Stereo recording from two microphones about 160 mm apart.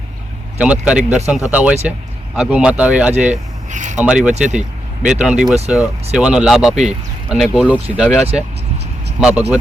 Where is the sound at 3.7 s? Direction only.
50° right (ahead or behind).